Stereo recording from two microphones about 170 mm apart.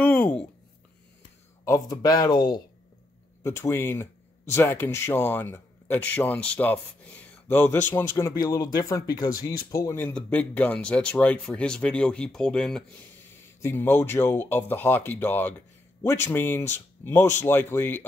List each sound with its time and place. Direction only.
0.0 s writing: 10° left (ahead or behind)
1.6 s speech: 20° left (ahead or behind)
3.4 s speech: 15° left (ahead or behind)